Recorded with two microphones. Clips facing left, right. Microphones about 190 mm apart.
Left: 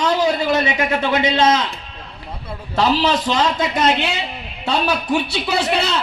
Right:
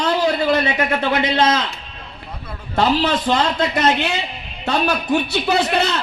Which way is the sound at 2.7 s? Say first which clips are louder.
Even; 55° right (ahead or behind).